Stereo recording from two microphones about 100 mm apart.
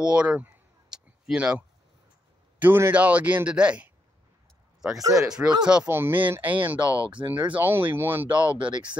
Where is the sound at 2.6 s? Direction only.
20° right (ahead or behind).